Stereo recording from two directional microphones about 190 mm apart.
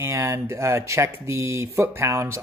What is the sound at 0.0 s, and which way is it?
Speech, 15° right (ahead or behind).